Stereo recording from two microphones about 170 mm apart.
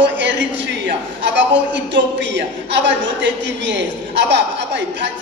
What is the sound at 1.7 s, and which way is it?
A man's voice, 90° right.